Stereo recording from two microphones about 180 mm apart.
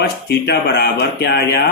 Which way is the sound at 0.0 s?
65° left (ahead or behind).